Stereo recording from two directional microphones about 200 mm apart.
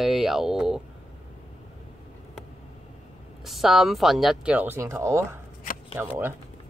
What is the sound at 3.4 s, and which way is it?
Speech, centre (ahead or behind).